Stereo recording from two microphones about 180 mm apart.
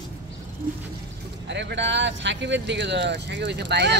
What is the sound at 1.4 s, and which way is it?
Speech, 75° right (ahead or behind).